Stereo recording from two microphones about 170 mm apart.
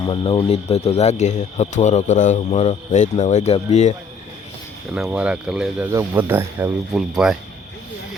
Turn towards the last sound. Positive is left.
turn(degrees=-5)  # may be behind; listen again after turning